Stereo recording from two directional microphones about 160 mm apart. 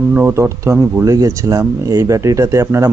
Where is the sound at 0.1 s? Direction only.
15° right (ahead or behind).